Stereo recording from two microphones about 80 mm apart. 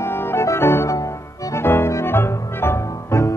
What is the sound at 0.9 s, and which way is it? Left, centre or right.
Music, left.